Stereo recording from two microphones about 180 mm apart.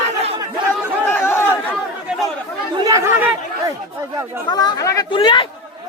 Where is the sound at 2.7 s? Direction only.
20° right (ahead or behind).